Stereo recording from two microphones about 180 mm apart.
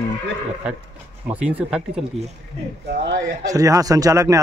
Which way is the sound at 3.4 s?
20° right (ahead or behind).